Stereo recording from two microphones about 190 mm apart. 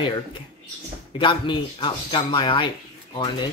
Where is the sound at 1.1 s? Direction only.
25° left (ahead or behind).